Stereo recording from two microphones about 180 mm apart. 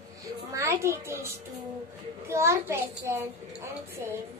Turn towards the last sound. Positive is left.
turn(degrees=-15)  # may be behind; listen again after turning